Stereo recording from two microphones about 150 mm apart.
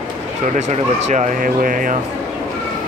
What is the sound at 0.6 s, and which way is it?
Speech, 50° right (ahead or behind).